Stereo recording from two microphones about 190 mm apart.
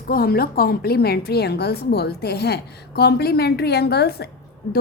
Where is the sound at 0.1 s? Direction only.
50° left (ahead or behind).